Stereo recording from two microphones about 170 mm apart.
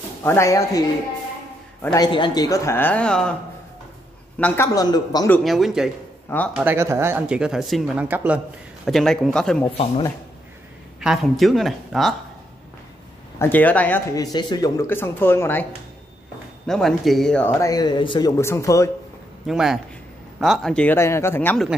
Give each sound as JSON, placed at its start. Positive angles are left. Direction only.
{"t": 0.2, "sound": "speech", "side_deg": 15}
{"t": 2.0, "sound": "speech", "side_deg": 30}
{"t": 4.4, "sound": "speech", "side_deg": 10}
{"t": 4.7, "sound": "a man's voice", "side_deg": 25}
{"t": 5.4, "sound": "a woman's voice", "side_deg": 0}
{"t": 6.5, "sound": "speech", "side_deg": -10}
{"t": 8.8, "sound": "a woman's voice", "side_deg": 0}
{"t": 11.0, "sound": "a woman's voice", "side_deg": 0}
{"t": 13.4, "sound": "speech", "side_deg": 10}
{"t": 14.1, "sound": "a man's voice", "side_deg": 25}
{"t": 14.9, "sound": "speech", "side_deg": 15}
{"t": 16.6, "sound": "speech", "side_deg": 5}
{"t": 18.4, "sound": "speech", "side_deg": 15}
{"t": 19.4, "sound": "a woman's voice", "side_deg": -5}